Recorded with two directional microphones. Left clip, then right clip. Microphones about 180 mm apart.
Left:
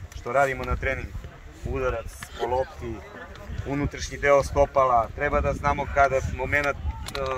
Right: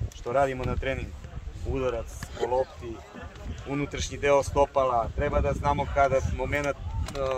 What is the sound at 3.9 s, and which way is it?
Speech, 50° right (ahead or behind).